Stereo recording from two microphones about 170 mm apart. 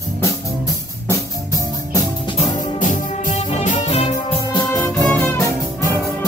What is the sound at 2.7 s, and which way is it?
Music, 50° left (ahead or behind).